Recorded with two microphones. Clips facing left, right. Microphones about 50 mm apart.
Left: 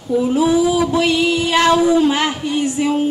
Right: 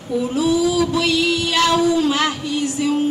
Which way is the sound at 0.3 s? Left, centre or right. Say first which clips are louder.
Left 3 dB; left.